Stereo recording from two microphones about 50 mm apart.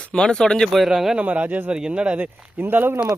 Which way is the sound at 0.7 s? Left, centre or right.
Centre.